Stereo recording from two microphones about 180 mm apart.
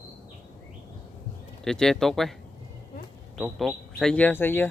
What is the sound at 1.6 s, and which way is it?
Speech, 5° left (ahead or behind).